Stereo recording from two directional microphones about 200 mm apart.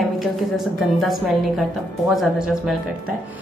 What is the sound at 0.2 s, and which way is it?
A woman's voice, centre (ahead or behind).